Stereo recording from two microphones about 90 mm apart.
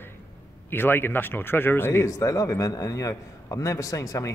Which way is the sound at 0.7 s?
25° left (ahead or behind).